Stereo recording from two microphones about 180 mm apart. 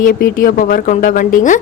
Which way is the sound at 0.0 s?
50° left (ahead or behind).